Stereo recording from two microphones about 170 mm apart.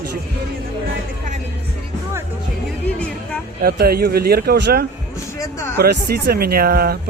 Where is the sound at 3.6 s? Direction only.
65° right (ahead or behind); by 4.9 s 80° right.